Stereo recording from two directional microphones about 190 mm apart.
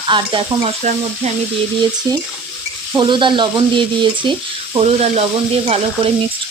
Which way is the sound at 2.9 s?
25° right (ahead or behind).